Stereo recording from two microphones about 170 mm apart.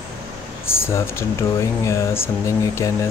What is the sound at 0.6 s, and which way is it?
Speech, 15° left (ahead or behind).